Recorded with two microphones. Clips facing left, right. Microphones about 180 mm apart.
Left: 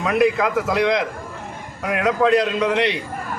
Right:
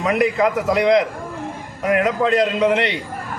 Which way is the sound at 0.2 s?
Centre (ahead or behind).